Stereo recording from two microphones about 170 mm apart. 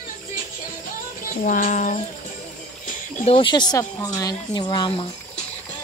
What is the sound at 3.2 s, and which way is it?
Speech, 30° left (ahead or behind).